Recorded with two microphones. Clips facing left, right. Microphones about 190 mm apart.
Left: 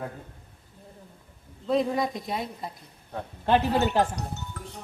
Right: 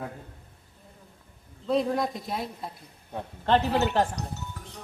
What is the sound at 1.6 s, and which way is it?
Speech, centre (ahead or behind).